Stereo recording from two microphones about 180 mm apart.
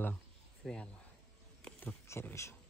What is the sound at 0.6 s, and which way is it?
Speech, 5° left (ahead or behind).